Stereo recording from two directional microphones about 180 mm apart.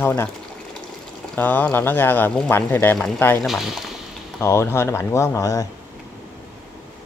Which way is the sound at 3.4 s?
Centre (ahead or behind).